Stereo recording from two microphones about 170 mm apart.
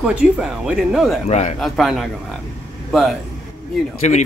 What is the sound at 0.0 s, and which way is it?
Speech, 5° right (ahead or behind).